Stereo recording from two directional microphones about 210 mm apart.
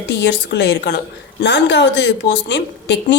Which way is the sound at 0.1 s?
55° left (ahead or behind).